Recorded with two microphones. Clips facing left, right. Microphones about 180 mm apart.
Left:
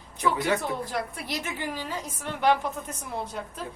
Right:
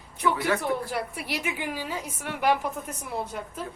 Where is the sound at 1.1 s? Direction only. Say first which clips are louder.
Right 2 dB; 10° right (ahead or behind).